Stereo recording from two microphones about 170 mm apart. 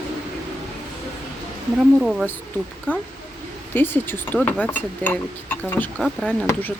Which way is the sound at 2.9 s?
10° left (ahead or behind).